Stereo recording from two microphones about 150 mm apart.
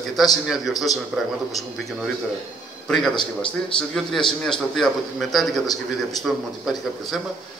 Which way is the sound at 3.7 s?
5° left (ahead or behind).